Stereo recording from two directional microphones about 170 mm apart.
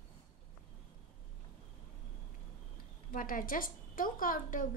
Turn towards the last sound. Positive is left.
turn(degrees=55)  # may be behind; listen again after turning